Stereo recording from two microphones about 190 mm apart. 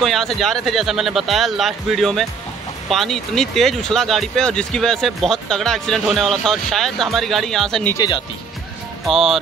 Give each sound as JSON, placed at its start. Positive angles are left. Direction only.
{"t": 0.0, "sound": "speech", "side_deg": 0}
{"t": 7.9, "sound": "speech", "side_deg": 20}
{"t": 9.0, "sound": "speech", "side_deg": 0}